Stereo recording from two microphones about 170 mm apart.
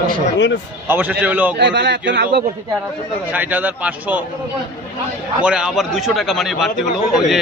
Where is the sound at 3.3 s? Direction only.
10° right (ahead or behind).